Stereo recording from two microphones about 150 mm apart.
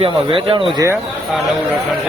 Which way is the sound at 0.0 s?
35° right (ahead or behind).